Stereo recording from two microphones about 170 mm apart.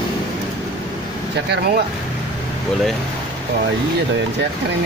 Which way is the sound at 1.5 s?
70° right (ahead or behind).